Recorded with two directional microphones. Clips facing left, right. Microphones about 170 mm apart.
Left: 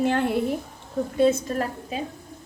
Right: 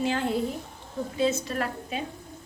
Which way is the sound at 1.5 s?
35° left (ahead or behind).